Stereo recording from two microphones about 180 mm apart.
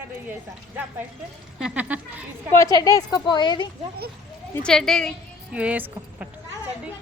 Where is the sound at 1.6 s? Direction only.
5° right (ahead or behind).